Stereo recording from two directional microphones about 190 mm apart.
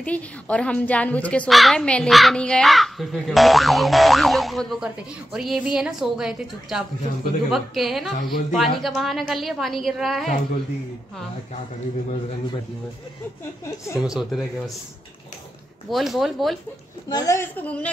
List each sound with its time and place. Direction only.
0.0 s a woman's voice: 5° left (ahead or behind)
13.9 s a woman's voice: centre (ahead or behind)
15.9 s a woman's voice: centre (ahead or behind)
17.1 s a woman's voice: 15° left (ahead or behind)